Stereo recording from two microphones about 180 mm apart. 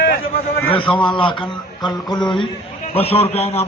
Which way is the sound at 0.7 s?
30° left (ahead or behind).